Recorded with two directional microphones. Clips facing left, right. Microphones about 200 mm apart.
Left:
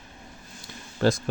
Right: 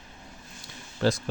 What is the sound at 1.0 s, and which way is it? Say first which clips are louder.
Speech: left 2 dB; 45° left (ahead or behind).